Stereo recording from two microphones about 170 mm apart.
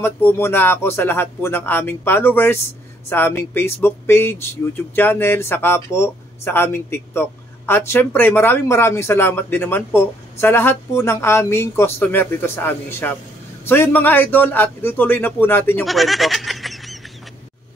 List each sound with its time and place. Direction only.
0.0 s speech: 15° left (ahead or behind)
15.8 s goat: centre (ahead or behind)